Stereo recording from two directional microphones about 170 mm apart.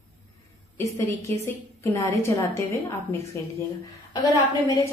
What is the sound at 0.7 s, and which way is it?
A woman's voice, 15° left (ahead or behind).